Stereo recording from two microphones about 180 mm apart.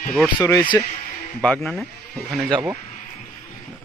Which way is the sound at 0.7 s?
15° left (ahead or behind).